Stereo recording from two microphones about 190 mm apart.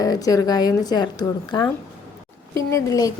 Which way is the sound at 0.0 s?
20° left (ahead or behind).